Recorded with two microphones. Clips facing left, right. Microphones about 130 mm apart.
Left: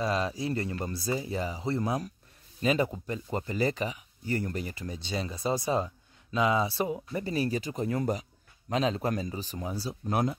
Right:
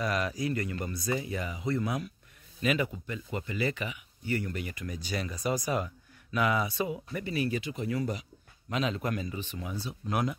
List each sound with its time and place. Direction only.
0.0 s speech: 25° left (ahead or behind)